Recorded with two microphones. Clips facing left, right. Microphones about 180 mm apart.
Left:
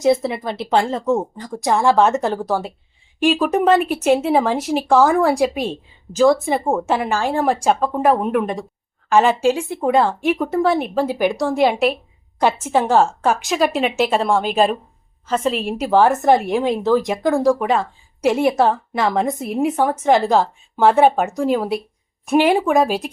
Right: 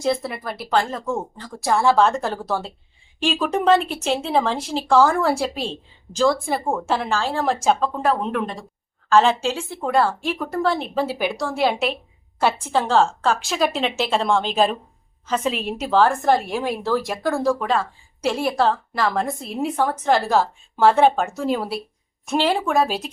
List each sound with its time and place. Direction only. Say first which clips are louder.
0.0 s a woman's voice: left 6 dB; 25° left (ahead or behind); by 15.6 s centre (ahead or behind)
15.9 s a woman's voice: left 3 dB; 15° left (ahead or behind)